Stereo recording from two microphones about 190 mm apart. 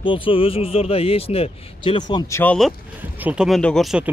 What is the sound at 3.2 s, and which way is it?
Speech, 5° right (ahead or behind).